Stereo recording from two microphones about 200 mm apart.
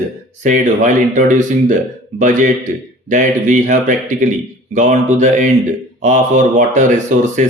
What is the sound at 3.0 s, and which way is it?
Speech, 40° right (ahead or behind).